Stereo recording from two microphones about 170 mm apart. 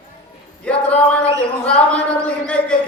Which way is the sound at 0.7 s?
5° left (ahead or behind).